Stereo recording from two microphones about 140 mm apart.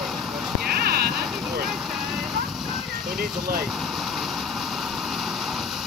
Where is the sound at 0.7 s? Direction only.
90° right.